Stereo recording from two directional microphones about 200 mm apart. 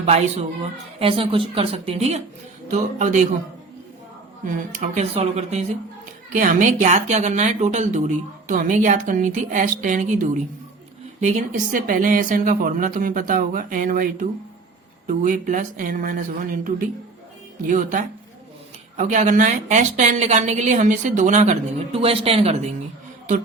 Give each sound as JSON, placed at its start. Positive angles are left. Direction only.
{"t": 0.0, "sound": "a woman's voice", "side_deg": -30}
{"t": 4.4, "sound": "a woman's voice", "side_deg": -40}